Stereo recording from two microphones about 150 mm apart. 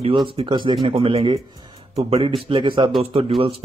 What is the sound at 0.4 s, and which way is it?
Speech, 30° right (ahead or behind).